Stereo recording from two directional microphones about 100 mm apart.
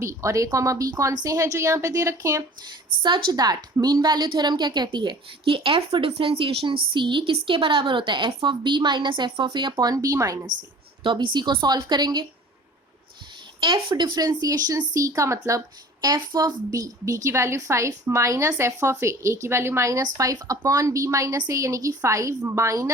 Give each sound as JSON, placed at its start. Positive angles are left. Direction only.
{"t": 0.0, "sound": "a woman's voice", "side_deg": -30}
{"t": 3.0, "sound": "a woman's voice", "side_deg": -50}
{"t": 9.9, "sound": "a woman's voice", "side_deg": -35}
{"t": 11.0, "sound": "a woman's voice", "side_deg": -55}
{"t": 13.6, "sound": "a woman's voice", "side_deg": -50}